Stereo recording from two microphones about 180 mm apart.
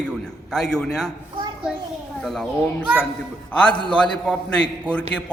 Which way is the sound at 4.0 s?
5° left (ahead or behind).